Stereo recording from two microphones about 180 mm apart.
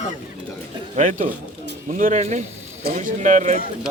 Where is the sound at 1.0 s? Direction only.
45° right (ahead or behind).